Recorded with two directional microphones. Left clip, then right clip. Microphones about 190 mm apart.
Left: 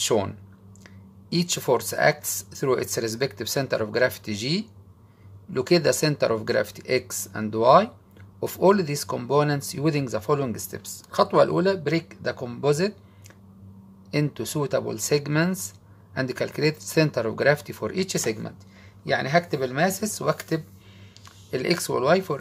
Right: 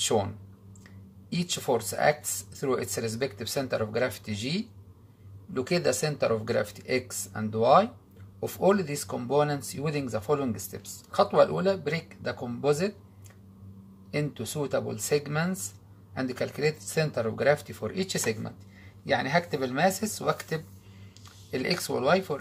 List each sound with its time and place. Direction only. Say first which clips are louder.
0.0 s speech: left 3 dB; 40° left (ahead or behind)
1.3 s speech: left 5 dB; 40° left (ahead or behind)
14.1 s speech: left 5 dB; 40° left (ahead or behind)